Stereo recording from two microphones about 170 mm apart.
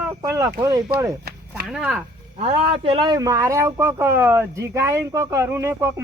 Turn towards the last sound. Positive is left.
turn(degrees=-15)  # may be behind; listen again after turning